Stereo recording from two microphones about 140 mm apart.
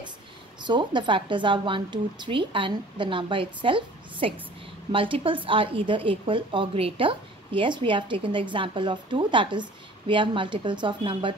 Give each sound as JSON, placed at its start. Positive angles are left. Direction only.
{"t": 0.6, "sound": "a woman's voice", "side_deg": -35}